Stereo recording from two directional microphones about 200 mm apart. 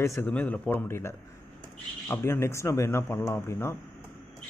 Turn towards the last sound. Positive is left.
turn(degrees=10)  # may be behind; listen again after turning